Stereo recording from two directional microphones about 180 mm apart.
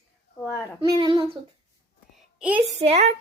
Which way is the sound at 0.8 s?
25° right (ahead or behind).